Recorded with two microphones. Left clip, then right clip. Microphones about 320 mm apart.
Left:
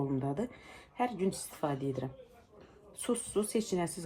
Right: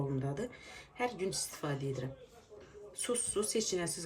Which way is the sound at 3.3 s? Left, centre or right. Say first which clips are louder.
Left 1 dB; centre.